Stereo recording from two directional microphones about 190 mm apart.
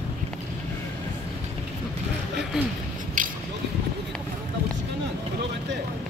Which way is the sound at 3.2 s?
45° right (ahead or behind).